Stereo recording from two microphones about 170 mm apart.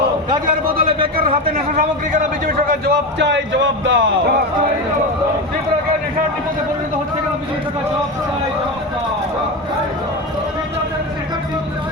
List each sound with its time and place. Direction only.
0.7 s a man's voice: 30° right (ahead or behind)
2.8 s speech: 80° right